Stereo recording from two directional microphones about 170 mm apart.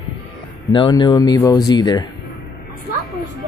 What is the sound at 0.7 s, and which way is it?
A man's voice, 30° left (ahead or behind).